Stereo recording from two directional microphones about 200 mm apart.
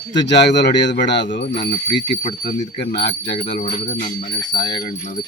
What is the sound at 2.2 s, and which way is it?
Wind chime, 40° left (ahead or behind).